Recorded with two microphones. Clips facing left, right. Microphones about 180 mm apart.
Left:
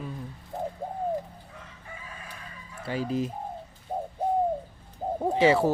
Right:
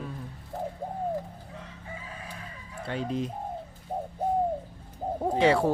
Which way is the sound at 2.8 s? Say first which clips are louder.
Left 2 dB; 5° left (ahead or behind).